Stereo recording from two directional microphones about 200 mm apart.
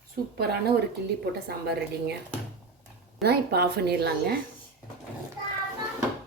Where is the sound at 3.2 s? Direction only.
55° right (ahead or behind).